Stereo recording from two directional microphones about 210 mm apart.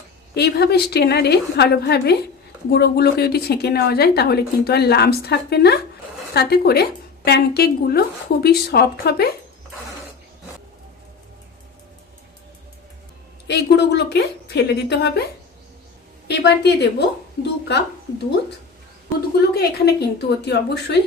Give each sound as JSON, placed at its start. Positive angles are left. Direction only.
{"t": 0.3, "sound": "a woman's voice", "side_deg": 50}
{"t": 13.5, "sound": "a woman's voice", "side_deg": 55}
{"t": 16.2, "sound": "a woman's voice", "side_deg": 50}
{"t": 19.5, "sound": "a woman's voice", "side_deg": 50}